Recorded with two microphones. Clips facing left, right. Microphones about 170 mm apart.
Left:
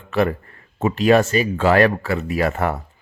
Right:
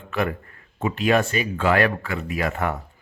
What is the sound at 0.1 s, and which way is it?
Speech, 35° left (ahead or behind).